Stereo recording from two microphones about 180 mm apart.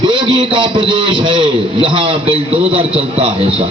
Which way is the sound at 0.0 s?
25° right (ahead or behind).